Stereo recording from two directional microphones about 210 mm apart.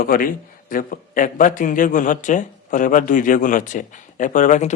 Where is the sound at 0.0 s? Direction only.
40° left (ahead or behind).